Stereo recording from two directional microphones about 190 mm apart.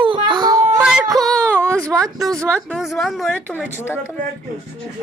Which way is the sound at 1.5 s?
15° right (ahead or behind).